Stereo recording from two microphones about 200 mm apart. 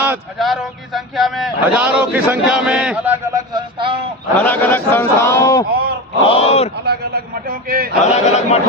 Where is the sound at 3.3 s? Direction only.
25° right (ahead or behind).